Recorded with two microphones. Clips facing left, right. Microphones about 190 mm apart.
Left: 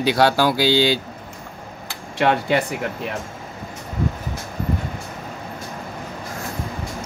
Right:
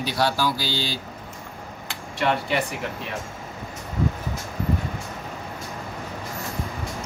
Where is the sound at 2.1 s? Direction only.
60° left (ahead or behind).